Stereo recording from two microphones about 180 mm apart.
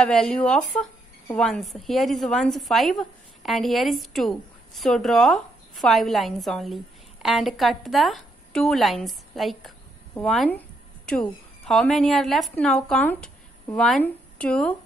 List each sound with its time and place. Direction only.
0.0 s a woman's voice: 5° left (ahead or behind)